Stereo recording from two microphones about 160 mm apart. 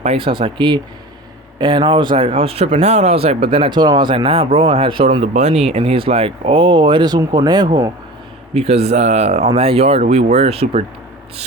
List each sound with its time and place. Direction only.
0.0 s speech: 35° right (ahead or behind)
8.5 s speech: 40° right (ahead or behind)